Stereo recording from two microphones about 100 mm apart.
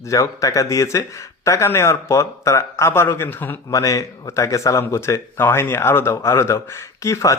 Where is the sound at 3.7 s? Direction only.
35° left (ahead or behind).